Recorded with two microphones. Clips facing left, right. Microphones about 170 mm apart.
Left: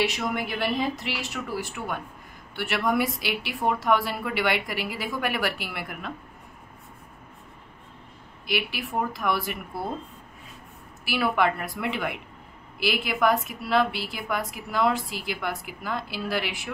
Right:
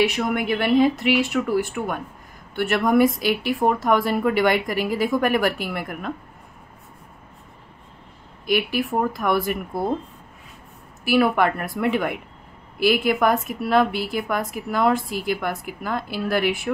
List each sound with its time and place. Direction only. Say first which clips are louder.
0.0 s a woman's voice: right 6 dB; 55° right (ahead or behind)
8.5 s a woman's voice: right 8 dB; 50° right (ahead or behind)
11.1 s a woman's voice: right 6 dB; 50° right (ahead or behind)